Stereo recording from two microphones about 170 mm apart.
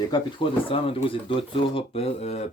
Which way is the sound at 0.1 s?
30° left (ahead or behind).